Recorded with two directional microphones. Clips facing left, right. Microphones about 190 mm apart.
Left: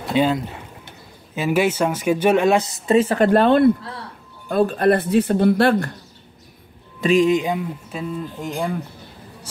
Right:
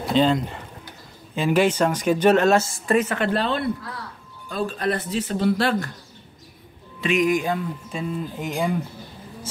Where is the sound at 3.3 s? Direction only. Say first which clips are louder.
Left 10 dB; 50° left (ahead or behind).